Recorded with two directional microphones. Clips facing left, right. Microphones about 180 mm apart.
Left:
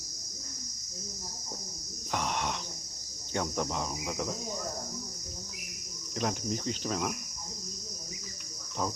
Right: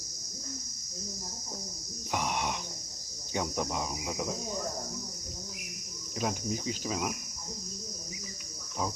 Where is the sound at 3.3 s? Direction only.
10° right (ahead or behind).